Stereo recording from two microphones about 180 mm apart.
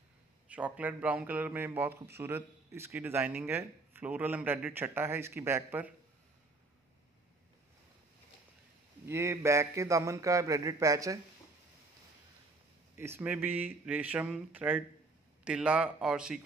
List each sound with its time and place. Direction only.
0.5 s a man's voice: 10° right (ahead or behind)
9.0 s a man's voice: 15° right (ahead or behind)
12.9 s a man's voice: 10° right (ahead or behind)